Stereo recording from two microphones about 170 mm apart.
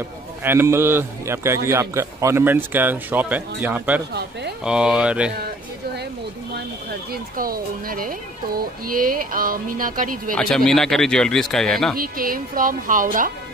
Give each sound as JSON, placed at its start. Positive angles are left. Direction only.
{"t": 0.4, "sound": "a man's voice", "side_deg": -15}
{"t": 7.1, "sound": "speech", "side_deg": -60}
{"t": 10.3, "sound": "a man's voice", "side_deg": 5}
{"t": 12.0, "sound": "a woman's voice", "side_deg": -55}